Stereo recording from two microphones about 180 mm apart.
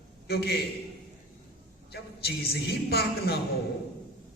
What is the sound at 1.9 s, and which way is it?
A woman's voice, 60° left (ahead or behind).